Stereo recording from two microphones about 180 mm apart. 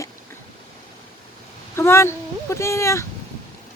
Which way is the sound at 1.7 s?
15° left (ahead or behind).